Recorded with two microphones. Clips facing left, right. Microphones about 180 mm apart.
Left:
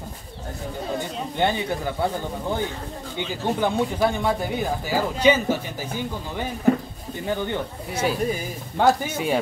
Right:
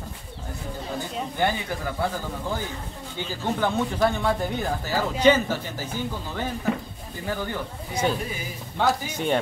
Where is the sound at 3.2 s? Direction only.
15° left (ahead or behind).